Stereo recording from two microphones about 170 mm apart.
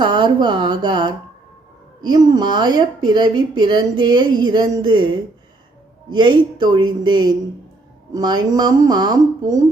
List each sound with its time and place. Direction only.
0.0 s speech: 25° right (ahead or behind)
6.1 s speech: 25° right (ahead or behind)